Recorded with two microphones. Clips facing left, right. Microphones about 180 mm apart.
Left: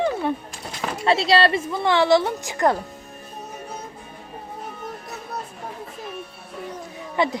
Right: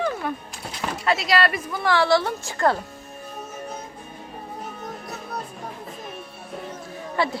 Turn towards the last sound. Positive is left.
turn(degrees=20)  # may be behind; listen again after turning